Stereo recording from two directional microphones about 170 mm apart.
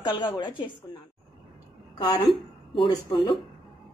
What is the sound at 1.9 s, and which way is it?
A woman's voice, 25° left (ahead or behind).